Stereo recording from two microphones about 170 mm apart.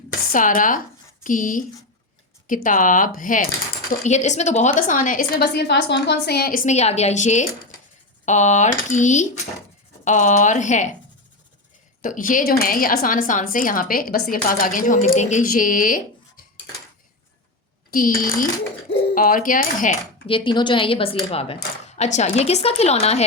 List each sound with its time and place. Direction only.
0.3 s a woman's voice: 50° left (ahead or behind)
12.0 s a woman's voice: 50° left (ahead or behind)
15.0 s a woman's voice: 40° left (ahead or behind)
17.9 s a woman's voice: 55° left (ahead or behind)
20.2 s speech: 30° left (ahead or behind)